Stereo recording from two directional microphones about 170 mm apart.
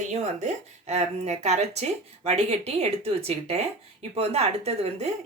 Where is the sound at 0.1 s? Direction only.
40° right (ahead or behind).